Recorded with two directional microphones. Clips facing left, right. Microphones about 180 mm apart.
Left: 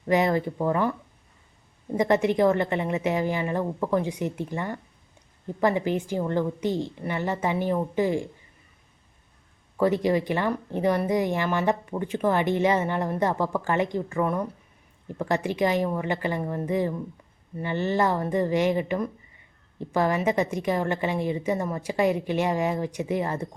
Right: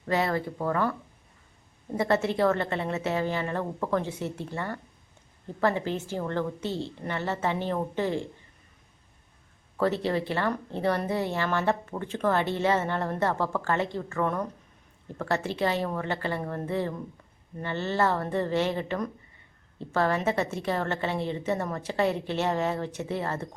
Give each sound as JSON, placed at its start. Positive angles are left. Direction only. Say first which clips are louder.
{"t": 0.0, "sound": "speech", "louder": "left 5 dB", "side_deg": 15}
{"t": 2.0, "sound": "speech", "louder": "left 4 dB", "side_deg": 15}
{"t": 9.7, "sound": "speech", "louder": "left 4 dB", "side_deg": 15}